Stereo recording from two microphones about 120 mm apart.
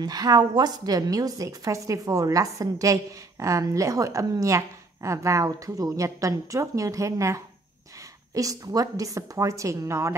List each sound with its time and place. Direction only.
0.0 s a woman's voice: 35° right (ahead or behind)